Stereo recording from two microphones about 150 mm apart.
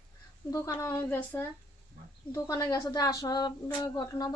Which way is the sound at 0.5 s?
20° left (ahead or behind).